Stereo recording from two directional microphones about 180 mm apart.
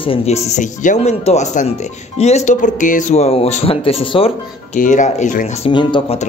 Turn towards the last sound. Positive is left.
turn(degrees=25)  # may be behind; listen again after turning